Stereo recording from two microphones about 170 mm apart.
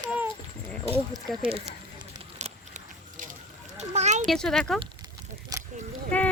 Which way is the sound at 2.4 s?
40° right (ahead or behind).